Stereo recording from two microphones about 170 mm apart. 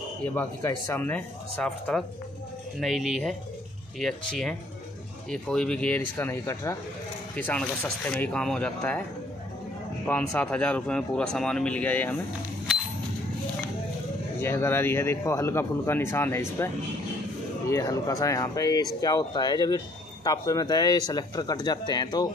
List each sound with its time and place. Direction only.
0.2 s speech: 10° left (ahead or behind)
10.0 s speech: 10° left (ahead or behind)
14.4 s speech: 15° left (ahead or behind)